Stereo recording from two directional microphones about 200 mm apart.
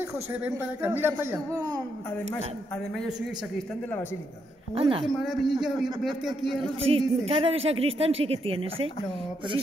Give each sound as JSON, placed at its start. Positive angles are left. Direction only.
{"t": 0.3, "sound": "a man's voice", "side_deg": -10}
{"t": 4.7, "sound": "speech", "side_deg": -25}
{"t": 5.0, "sound": "a man's voice", "side_deg": 0}
{"t": 6.8, "sound": "speech", "side_deg": -30}